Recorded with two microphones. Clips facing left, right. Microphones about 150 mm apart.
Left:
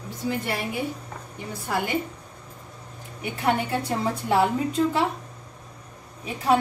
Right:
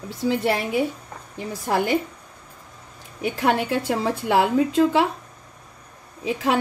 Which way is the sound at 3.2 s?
90° right.